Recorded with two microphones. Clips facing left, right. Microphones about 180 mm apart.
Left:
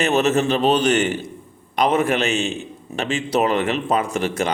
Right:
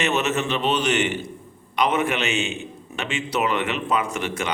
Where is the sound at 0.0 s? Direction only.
35° left (ahead or behind).